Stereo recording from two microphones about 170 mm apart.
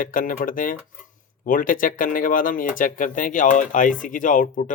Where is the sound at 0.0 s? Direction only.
55° left (ahead or behind).